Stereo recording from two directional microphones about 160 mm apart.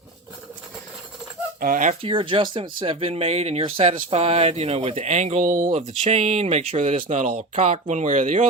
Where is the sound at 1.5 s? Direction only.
55° right (ahead or behind).